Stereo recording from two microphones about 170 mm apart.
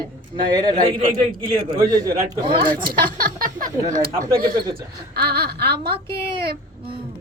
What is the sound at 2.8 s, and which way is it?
A woman's voice, 60° right (ahead or behind).